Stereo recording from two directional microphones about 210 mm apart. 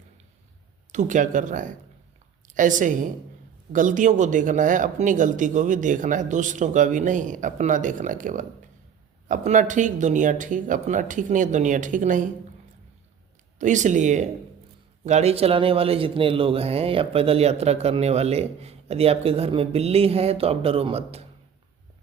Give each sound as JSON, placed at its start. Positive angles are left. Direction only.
{"t": 0.9, "sound": "a woman's voice", "side_deg": -35}
{"t": 13.6, "sound": "speech", "side_deg": -35}